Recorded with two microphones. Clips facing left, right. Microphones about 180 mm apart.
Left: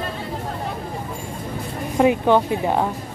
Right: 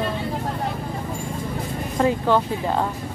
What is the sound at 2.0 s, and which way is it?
Speech, 15° left (ahead or behind).